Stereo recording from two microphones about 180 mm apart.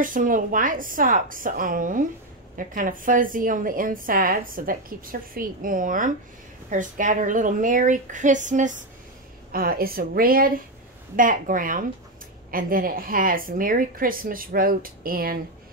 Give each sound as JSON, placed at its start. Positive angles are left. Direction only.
{"t": 0.0, "sound": "a woman's voice", "side_deg": -50}
{"t": 9.5, "sound": "a woman's voice", "side_deg": -55}